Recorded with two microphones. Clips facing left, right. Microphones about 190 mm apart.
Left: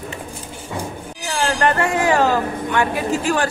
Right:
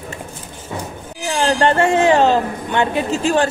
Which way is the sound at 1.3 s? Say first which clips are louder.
Right 3 dB; 25° right (ahead or behind).